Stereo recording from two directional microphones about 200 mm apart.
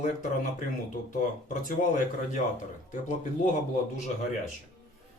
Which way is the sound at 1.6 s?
40° left (ahead or behind).